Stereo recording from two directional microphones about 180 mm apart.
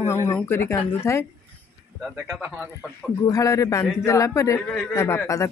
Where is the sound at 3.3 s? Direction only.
15° left (ahead or behind).